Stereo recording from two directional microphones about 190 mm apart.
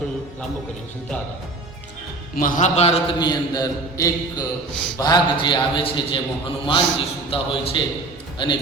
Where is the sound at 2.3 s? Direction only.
40° left (ahead or behind); by 6.2 s 25° left (ahead or behind).